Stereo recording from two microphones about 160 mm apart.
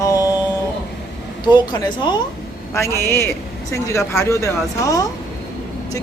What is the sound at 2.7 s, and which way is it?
A man's voice, 15° left (ahead or behind).